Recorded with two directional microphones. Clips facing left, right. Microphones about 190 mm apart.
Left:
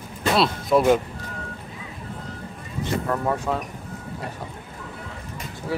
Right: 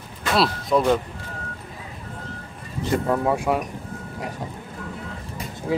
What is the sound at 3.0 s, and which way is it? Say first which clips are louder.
Speech: right 3 dB; 10° right (ahead or behind).